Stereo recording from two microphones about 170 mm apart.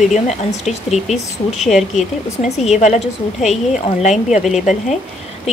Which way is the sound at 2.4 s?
45° left (ahead or behind).